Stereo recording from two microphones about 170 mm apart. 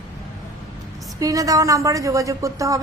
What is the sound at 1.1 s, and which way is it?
A woman's voice, 20° right (ahead or behind).